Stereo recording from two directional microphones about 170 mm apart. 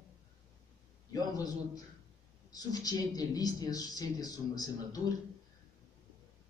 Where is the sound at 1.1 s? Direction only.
20° left (ahead or behind).